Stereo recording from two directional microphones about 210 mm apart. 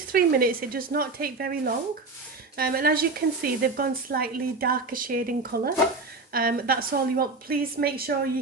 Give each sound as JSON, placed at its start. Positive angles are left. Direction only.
{"t": 0.1, "sound": "a woman's voice", "side_deg": -45}